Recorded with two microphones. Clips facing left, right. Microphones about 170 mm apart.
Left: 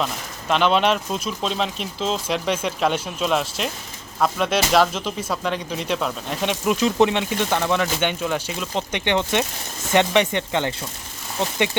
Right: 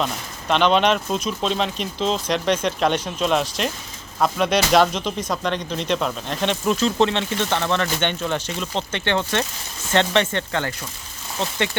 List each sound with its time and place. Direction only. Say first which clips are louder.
0.0 s speech: right 1 dB; centre (ahead or behind)